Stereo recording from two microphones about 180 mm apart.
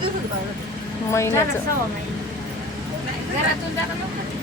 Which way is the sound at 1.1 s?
15° left (ahead or behind).